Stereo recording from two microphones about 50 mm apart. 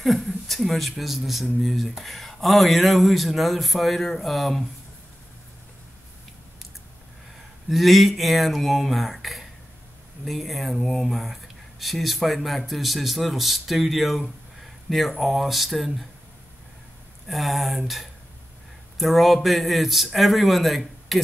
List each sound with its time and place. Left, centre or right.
0.0 s speech: centre
7.7 s speech: centre
17.3 s speech: centre